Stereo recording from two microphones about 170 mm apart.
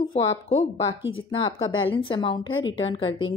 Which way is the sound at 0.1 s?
40° left (ahead or behind).